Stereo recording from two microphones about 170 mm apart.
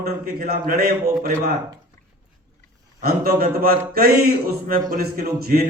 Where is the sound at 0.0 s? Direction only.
65° right (ahead or behind).